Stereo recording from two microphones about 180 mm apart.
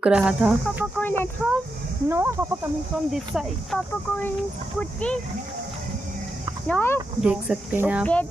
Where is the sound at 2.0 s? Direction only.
10° right (ahead or behind).